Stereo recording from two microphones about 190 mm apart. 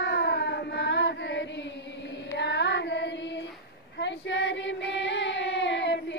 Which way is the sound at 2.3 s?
65° left (ahead or behind).